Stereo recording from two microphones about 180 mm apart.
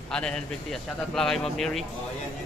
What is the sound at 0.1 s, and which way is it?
A man's voice, 5° left (ahead or behind).